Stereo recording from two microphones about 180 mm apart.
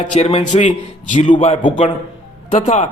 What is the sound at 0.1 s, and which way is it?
A man's voice, 35° left (ahead or behind).